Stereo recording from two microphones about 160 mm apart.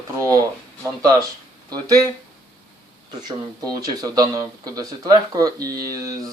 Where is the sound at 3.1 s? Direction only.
25° right (ahead or behind).